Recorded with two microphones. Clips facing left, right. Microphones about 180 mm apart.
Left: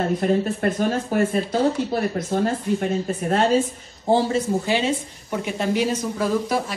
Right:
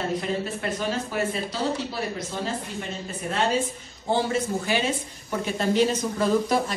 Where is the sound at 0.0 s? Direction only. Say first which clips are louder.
Left 7 dB; 50° left (ahead or behind).